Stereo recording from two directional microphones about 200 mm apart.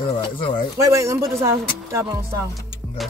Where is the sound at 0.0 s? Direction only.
25° left (ahead or behind).